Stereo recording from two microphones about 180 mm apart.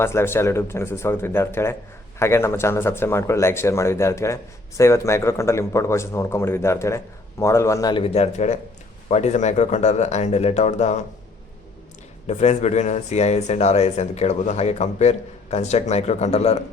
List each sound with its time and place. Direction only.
0.0 s speech: 15° left (ahead or behind); by 11.0 s 40° left (ahead or behind)
12.3 s speech: 40° left (ahead or behind)